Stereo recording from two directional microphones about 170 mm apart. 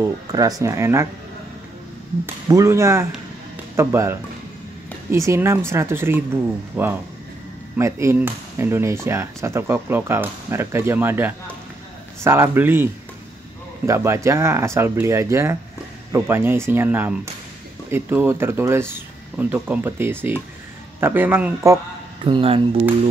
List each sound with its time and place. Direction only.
0.3 s speech: 20° right (ahead or behind)
2.4 s speech: 20° right (ahead or behind)
13.8 s speech: 15° right (ahead or behind)
22.2 s speech: 30° right (ahead or behind)